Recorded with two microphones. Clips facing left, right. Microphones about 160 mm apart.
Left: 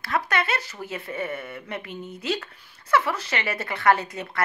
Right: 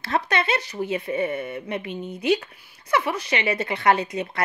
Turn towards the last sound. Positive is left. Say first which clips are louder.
# right 1 dB
turn(degrees=-20)  # may be behind; listen again after turning